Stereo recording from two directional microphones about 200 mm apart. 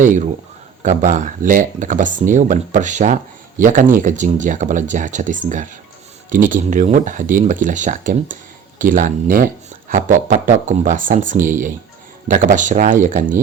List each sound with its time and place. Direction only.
0.0 s speech: 40° right (ahead or behind)